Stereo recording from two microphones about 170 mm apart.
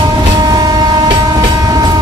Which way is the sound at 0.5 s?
25° right (ahead or behind).